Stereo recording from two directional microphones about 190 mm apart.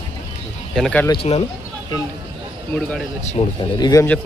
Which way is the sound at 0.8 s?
5° left (ahead or behind).